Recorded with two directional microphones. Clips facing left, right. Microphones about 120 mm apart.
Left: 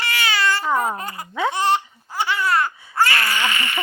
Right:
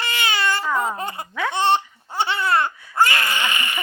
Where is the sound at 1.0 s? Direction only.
25° right (ahead or behind).